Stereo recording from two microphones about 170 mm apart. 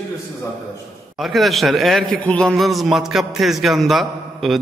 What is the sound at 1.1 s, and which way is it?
A man's voice, centre (ahead or behind).